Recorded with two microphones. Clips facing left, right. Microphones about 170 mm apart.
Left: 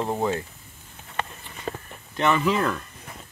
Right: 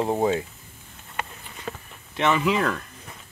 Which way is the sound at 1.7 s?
40° left (ahead or behind).